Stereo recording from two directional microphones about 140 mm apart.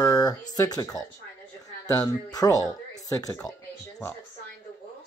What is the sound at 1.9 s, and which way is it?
Speech, 25° left (ahead or behind).